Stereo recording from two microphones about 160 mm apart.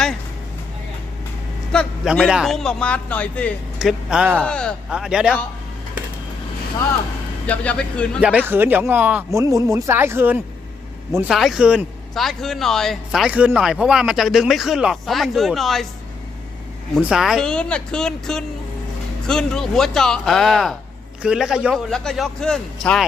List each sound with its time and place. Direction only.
1.7 s speech: 5° left (ahead or behind)
3.8 s speech: 5° right (ahead or behind)
4.4 s speech: 5° left (ahead or behind)
7.4 s speech: 10° left (ahead or behind)
8.2 s speech: 10° right (ahead or behind)
9.4 s speech: 20° right (ahead or behind)
11.3 s speech: centre (ahead or behind)
16.9 s speech: 5° right (ahead or behind)